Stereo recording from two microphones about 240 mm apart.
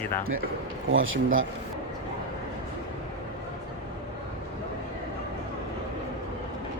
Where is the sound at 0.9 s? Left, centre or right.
Right.